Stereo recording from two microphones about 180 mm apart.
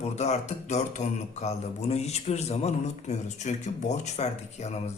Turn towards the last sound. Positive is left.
turn(degrees=35)  # may be behind; listen again after turning